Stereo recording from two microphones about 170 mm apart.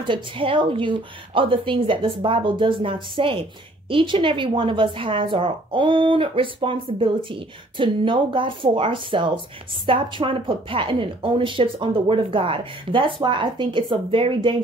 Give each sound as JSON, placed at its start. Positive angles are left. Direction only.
{"t": 0.0, "sound": "a woman's voice", "side_deg": -30}